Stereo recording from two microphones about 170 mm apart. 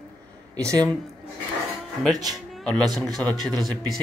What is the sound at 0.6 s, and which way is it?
Speech, 15° right (ahead or behind).